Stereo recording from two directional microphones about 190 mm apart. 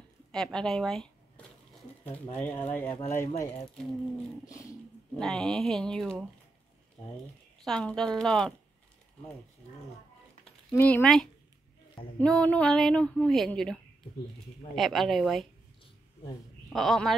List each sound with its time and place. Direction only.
0.3 s speech: 5° left (ahead or behind)
5.1 s speech: centre (ahead or behind)
7.6 s speech: 5° left (ahead or behind)
10.7 s speech: 10° left (ahead or behind)
14.8 s speech: centre (ahead or behind)
16.6 s speech: centre (ahead or behind)